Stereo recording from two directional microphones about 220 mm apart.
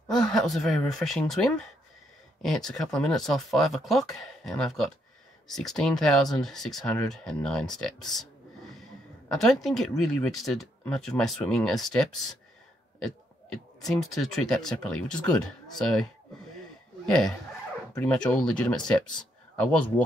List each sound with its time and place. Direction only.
0.1 s speech: centre (ahead or behind)
9.3 s speech: centre (ahead or behind)
13.7 s speech: centre (ahead or behind)
17.0 s speech: 5° left (ahead or behind)